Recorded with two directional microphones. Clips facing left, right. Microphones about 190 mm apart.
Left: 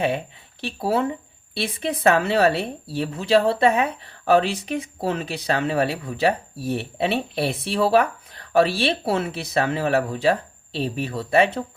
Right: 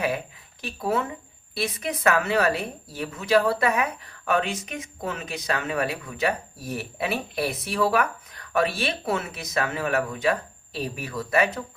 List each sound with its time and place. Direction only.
0.6 s speech: 30° left (ahead or behind)